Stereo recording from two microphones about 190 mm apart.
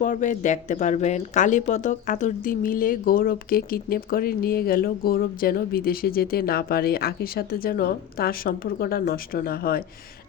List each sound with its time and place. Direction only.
0.0 s speech: 40° left (ahead or behind)